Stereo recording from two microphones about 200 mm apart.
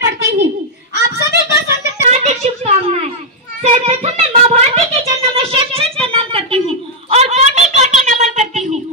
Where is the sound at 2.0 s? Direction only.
30° right (ahead or behind).